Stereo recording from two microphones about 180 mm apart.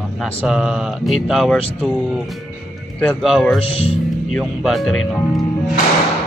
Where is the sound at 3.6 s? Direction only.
30° left (ahead or behind).